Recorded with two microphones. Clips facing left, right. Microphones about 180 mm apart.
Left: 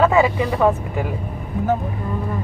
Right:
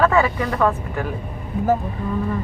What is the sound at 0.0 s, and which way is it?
Speech, 15° left (ahead or behind).